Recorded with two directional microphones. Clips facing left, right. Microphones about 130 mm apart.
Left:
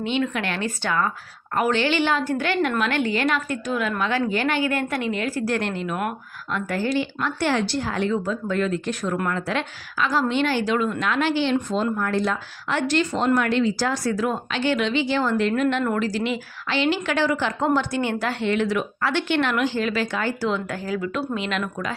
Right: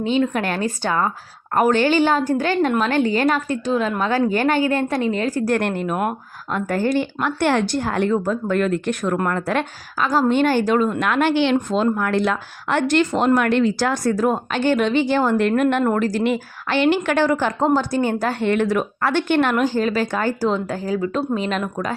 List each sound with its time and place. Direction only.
0.0 s a woman's voice: 35° right (ahead or behind)
1.5 s a woman's voice: 45° right (ahead or behind)
4.0 s a woman's voice: 40° right (ahead or behind)
5.5 s a woman's voice: 55° right (ahead or behind)
11.0 s a woman's voice: 55° right (ahead or behind); by 21.6 s 40° right (ahead or behind)